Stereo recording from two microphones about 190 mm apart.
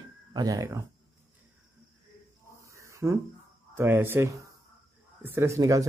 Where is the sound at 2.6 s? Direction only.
15° right (ahead or behind).